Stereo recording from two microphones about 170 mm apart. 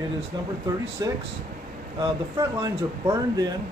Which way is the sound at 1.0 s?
20° right (ahead or behind).